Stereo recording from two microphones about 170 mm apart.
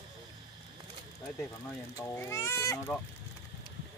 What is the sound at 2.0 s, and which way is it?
Speech, 15° left (ahead or behind).